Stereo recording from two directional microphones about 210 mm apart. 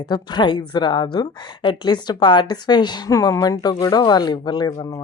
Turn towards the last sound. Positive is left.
turn(degrees=15)  # may be behind; listen again after turning